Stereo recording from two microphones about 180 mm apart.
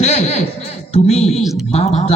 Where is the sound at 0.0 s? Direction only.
35° left (ahead or behind).